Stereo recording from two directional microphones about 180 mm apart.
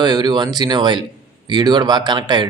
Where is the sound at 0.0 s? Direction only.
25° right (ahead or behind).